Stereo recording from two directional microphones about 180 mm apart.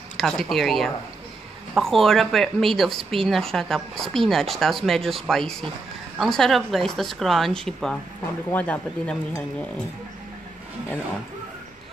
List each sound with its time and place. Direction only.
0.2 s a woman's voice: centre (ahead or behind)